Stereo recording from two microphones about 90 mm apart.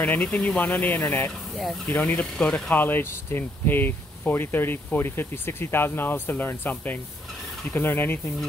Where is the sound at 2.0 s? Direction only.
10° left (ahead or behind).